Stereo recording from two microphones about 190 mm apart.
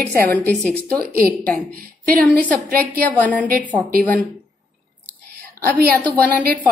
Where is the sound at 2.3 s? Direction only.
10° left (ahead or behind).